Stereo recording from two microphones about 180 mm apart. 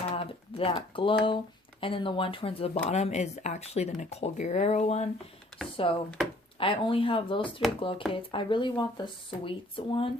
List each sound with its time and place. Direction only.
0.1 s speech: 30° left (ahead or behind)